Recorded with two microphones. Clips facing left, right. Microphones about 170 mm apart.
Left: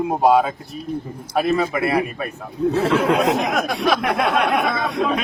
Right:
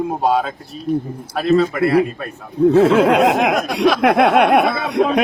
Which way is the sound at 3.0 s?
75° right (ahead or behind).